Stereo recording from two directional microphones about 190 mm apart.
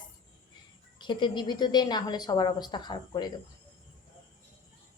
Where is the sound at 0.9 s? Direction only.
25° left (ahead or behind).